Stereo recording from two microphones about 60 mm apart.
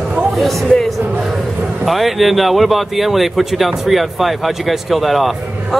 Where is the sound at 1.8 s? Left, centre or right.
Centre.